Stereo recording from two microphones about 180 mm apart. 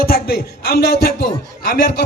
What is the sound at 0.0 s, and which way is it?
A man's voice, 60° left (ahead or behind).